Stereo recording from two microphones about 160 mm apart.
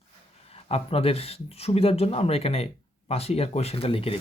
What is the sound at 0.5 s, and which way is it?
Speech, 40° left (ahead or behind).